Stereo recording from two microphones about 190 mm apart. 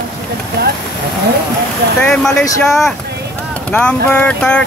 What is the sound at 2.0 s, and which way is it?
Speech, 5° left (ahead or behind).